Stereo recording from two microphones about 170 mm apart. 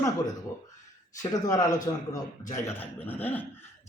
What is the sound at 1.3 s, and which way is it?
A man's voice, 20° left (ahead or behind).